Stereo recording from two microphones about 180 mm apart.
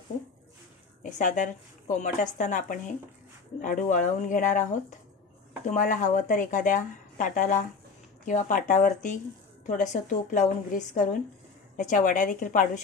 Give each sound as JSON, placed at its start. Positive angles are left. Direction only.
{"t": 1.1, "sound": "a woman's voice", "side_deg": 45}
{"t": 5.7, "sound": "a woman's voice", "side_deg": 45}